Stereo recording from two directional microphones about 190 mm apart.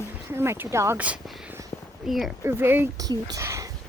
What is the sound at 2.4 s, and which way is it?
Speech, 10° right (ahead or behind).